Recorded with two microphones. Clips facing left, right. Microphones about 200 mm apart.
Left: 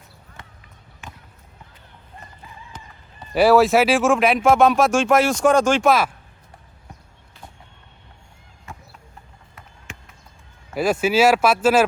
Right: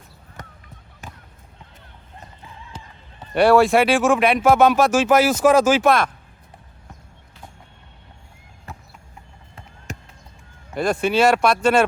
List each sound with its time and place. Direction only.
0.4 s basketball bounce: 40° right (ahead or behind)
1.0 s a sound: 40° right (ahead or behind)
3.2 s speech: centre (ahead or behind)
9.6 s basketball bounce: 40° right (ahead or behind)
10.8 s speech: 5° left (ahead or behind)